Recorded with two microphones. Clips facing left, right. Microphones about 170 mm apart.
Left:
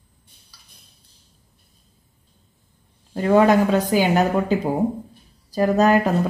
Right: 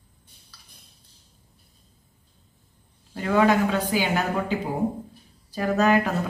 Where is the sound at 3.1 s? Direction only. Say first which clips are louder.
Left 5 dB; 40° left (ahead or behind).